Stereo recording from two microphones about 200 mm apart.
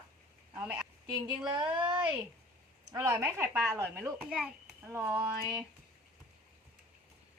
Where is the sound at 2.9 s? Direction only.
15° right (ahead or behind).